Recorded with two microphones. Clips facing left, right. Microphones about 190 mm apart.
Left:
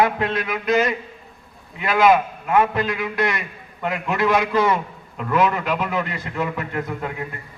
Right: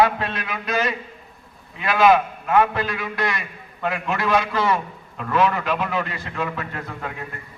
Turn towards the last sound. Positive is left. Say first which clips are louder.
# left 4 dB
turn(degrees=15)  # may be behind; listen again after turning